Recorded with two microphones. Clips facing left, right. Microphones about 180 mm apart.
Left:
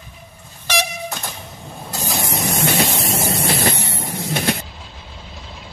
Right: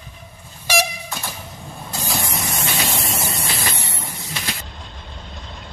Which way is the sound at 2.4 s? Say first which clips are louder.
Left 6 dB; 65° left (ahead or behind).